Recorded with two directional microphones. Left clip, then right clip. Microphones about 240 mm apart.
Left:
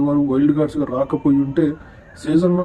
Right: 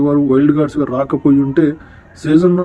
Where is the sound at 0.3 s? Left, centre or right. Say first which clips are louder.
Right 5 dB; centre.